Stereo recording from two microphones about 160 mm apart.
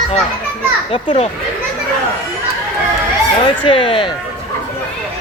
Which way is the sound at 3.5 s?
30° left (ahead or behind).